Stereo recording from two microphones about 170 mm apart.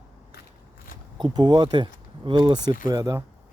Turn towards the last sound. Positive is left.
turn(degrees=-20)  # may be behind; listen again after turning